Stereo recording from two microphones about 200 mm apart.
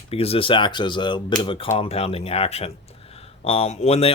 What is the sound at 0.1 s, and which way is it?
Speech, 30° left (ahead or behind).